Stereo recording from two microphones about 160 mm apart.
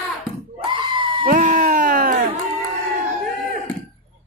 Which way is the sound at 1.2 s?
55° right (ahead or behind).